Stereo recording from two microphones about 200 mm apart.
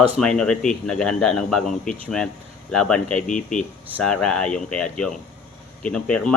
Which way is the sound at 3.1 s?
40° left (ahead or behind).